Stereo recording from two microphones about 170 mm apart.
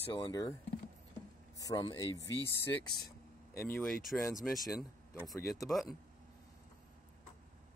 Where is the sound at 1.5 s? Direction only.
20° left (ahead or behind).